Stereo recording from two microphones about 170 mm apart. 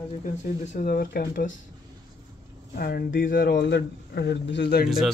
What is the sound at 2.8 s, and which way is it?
Speech, 60° left (ahead or behind).